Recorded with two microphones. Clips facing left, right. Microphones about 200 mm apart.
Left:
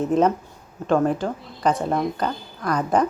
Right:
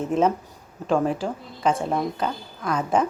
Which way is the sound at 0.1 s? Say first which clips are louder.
Right 1 dB; 5° right (ahead or behind).